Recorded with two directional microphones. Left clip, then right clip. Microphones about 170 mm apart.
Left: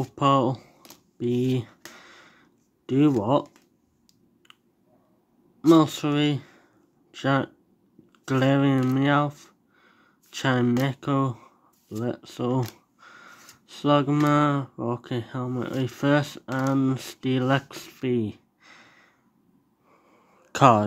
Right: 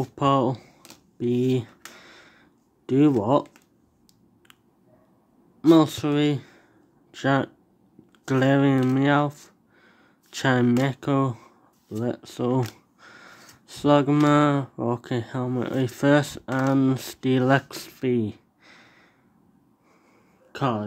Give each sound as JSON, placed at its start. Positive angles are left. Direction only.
{"t": 0.0, "sound": "speech", "side_deg": 0}
{"t": 1.1, "sound": "a sound", "side_deg": 0}
{"t": 2.9, "sound": "speech", "side_deg": 0}
{"t": 5.6, "sound": "speech", "side_deg": 0}
{"t": 20.5, "sound": "speech", "side_deg": 40}